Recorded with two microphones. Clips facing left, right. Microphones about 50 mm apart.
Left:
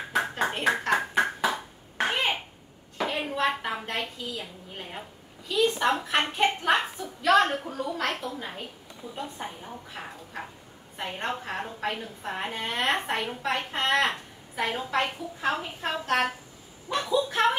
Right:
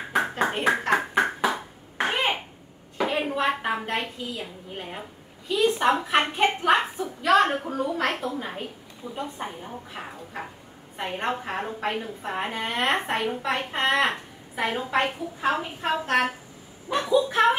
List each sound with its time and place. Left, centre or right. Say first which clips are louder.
0.1 s clapping: right 3 dB; centre
3.0 s a sound: right 2 dB; centre
3.8 s a woman's voice: right 3 dB; centre
7.4 s a woman's voice: right 4 dB; right
7.9 s a woman's voice: right 2 dB; centre
8.3 s a woman's voice: right 4 dB; right
9.0 s a woman's voice: right 4 dB; right
9.4 s a woman's voice: right 3 dB; centre
11.0 s a woman's voice: right 3 dB; centre